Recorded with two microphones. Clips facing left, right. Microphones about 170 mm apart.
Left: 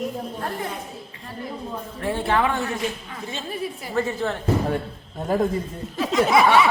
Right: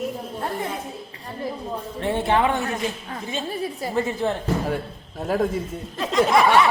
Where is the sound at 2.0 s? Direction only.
25° right (ahead or behind).